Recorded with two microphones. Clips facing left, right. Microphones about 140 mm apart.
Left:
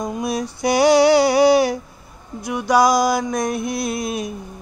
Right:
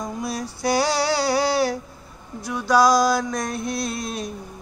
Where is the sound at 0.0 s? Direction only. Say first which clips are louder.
Left 5 dB; 15° left (ahead or behind).